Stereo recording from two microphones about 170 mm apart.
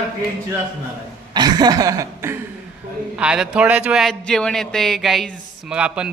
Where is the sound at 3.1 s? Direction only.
5° right (ahead or behind).